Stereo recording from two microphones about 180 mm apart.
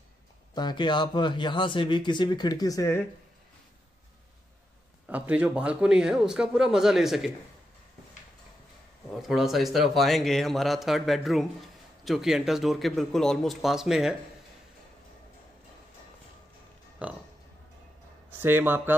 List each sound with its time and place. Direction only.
0.6 s a man's voice: 25° left (ahead or behind)
5.0 s a man's voice: 10° right (ahead or behind)
9.3 s a man's voice: centre (ahead or behind)
17.0 s speech: 5° right (ahead or behind)
18.4 s speech: 10° right (ahead or behind)